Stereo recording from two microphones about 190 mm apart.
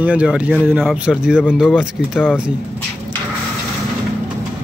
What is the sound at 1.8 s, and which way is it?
Speech, 5° right (ahead or behind).